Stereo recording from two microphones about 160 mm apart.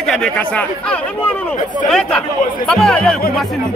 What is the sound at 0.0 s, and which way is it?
Speech, 5° left (ahead or behind).